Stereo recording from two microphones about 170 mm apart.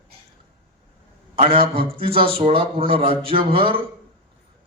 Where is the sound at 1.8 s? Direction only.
35° right (ahead or behind).